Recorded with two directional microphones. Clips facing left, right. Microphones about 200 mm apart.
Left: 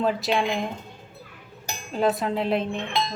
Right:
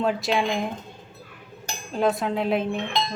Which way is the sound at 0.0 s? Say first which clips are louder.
Even; centre (ahead or behind).